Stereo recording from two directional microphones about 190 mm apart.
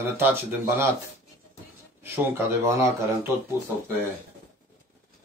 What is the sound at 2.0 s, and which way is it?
A man's voice, 10° right (ahead or behind).